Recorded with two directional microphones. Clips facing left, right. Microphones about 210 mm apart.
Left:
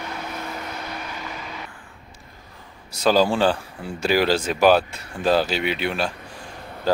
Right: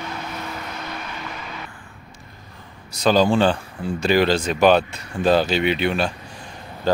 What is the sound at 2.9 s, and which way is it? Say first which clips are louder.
Speech: right 2 dB; 5° left (ahead or behind).